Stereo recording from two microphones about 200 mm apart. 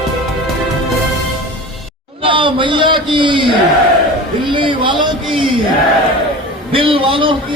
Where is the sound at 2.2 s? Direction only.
25° right (ahead or behind).